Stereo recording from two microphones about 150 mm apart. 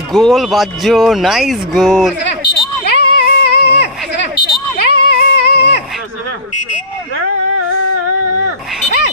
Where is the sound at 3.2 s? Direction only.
90° left.